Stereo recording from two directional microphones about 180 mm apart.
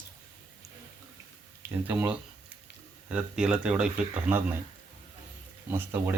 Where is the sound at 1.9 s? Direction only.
10° right (ahead or behind).